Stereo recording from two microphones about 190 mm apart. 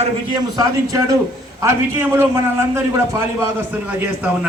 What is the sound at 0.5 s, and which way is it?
A man's voice, 15° right (ahead or behind).